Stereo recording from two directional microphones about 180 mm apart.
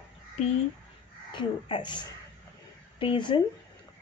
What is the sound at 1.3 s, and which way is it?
Speech, 25° left (ahead or behind).